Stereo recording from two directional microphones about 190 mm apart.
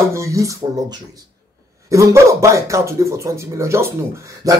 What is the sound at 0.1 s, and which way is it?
Speech, 15° right (ahead or behind).